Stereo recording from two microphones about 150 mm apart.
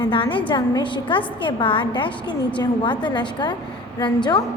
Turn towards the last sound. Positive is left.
turn(degrees=30)  # may be behind; listen again after turning